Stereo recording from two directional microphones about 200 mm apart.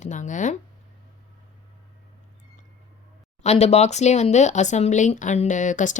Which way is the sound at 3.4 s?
30° left (ahead or behind).